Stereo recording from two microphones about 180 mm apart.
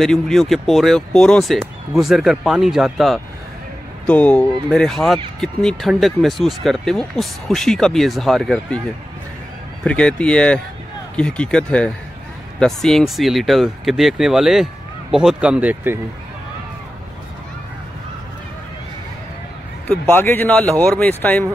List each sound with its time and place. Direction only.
0.0 s speech: centre (ahead or behind)
9.8 s speech: 5° left (ahead or behind); by 16.0 s 10° right (ahead or behind)
19.9 s speech: 10° left (ahead or behind)